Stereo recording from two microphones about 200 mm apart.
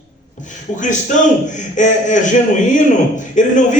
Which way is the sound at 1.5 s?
40° left (ahead or behind).